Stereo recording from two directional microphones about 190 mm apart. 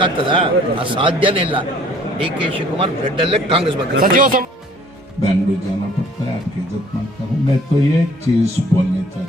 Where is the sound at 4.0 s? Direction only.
45° right (ahead or behind).